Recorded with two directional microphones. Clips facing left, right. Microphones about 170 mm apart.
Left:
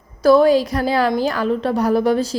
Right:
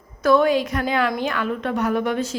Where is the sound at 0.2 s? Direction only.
35° left (ahead or behind).